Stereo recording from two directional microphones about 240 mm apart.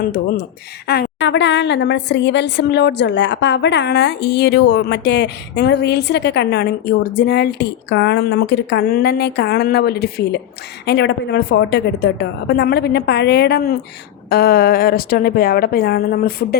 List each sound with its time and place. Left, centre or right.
0.0 s a woman's voice: left